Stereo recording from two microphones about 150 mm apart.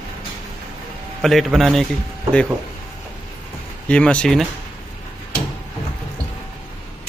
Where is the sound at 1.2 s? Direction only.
Centre (ahead or behind).